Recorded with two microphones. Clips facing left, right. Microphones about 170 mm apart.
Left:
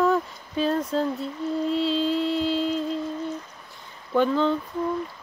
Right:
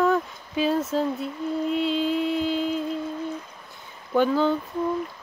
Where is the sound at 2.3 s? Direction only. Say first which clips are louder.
Even; 50° right (ahead or behind).